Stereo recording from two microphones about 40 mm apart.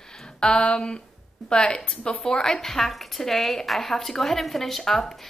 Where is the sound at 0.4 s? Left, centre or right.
Left.